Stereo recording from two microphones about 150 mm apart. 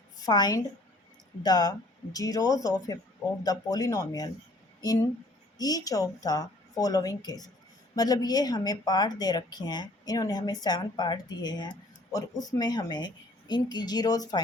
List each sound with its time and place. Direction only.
0.2 s a woman's voice: 25° left (ahead or behind)